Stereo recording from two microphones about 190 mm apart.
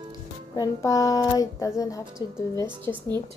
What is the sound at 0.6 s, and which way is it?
A woman's voice, 20° left (ahead or behind).